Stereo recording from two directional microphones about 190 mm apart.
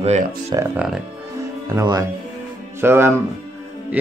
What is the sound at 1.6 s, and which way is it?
Speech, 15° right (ahead or behind).